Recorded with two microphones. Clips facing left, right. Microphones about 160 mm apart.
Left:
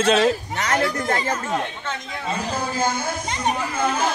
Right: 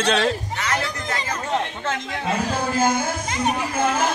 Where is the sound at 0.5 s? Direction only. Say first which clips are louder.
Left 4 dB; 45° left (ahead or behind).